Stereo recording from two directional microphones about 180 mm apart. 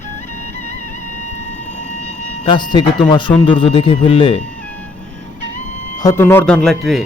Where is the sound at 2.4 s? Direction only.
25° left (ahead or behind).